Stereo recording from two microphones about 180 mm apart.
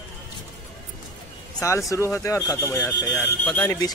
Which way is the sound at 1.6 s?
20° left (ahead or behind).